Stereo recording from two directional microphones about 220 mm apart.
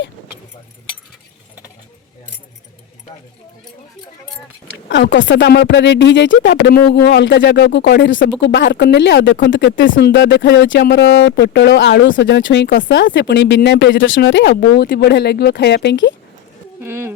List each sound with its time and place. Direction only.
4.9 s speech: 55° left (ahead or behind)
16.8 s speech: 10° right (ahead or behind)